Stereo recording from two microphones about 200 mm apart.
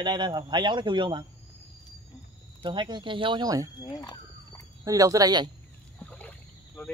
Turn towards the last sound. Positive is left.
turn(degrees=5)  # may be behind; listen again after turning